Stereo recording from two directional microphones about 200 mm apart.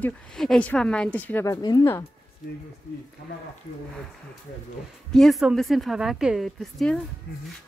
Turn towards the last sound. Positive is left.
turn(degrees=0)  # may be behind; listen again after turning